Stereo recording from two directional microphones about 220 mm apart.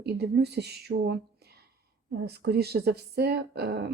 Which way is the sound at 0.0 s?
50° right (ahead or behind).